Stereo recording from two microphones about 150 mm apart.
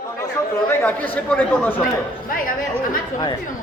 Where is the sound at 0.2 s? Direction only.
20° left (ahead or behind).